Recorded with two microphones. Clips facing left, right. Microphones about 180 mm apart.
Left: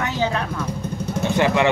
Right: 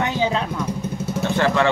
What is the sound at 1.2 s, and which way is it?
Speech, 15° left (ahead or behind).